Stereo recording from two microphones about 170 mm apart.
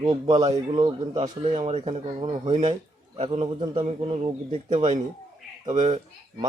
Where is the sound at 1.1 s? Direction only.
40° right (ahead or behind).